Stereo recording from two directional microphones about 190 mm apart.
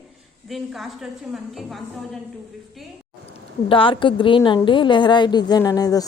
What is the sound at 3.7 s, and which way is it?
A woman's voice, 25° left (ahead or behind).